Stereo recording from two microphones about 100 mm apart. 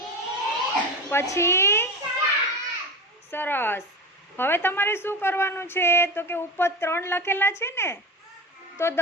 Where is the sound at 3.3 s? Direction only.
20° left (ahead or behind).